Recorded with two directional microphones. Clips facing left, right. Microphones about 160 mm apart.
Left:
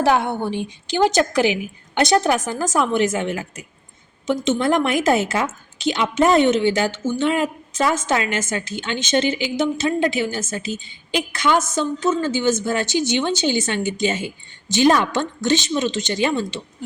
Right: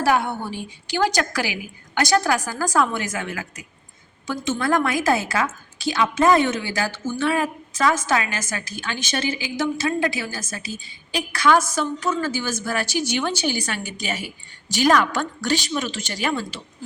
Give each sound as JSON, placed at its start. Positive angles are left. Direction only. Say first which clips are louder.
{"t": 0.0, "sound": "a woman's voice", "louder": "left 3 dB", "side_deg": 20}